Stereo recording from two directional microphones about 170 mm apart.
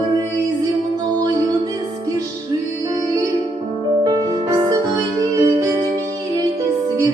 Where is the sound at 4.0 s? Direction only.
25° right (ahead or behind).